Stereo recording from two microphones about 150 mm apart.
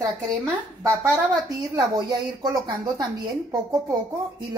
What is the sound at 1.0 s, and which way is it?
Speech, 20° right (ahead or behind).